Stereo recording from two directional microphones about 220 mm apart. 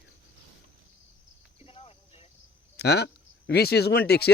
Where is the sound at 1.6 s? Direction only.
25° left (ahead or behind).